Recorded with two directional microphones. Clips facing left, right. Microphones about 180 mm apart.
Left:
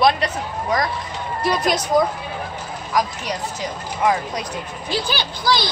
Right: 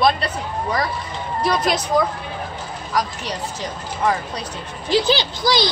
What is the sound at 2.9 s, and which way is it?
Speech, 10° left (ahead or behind).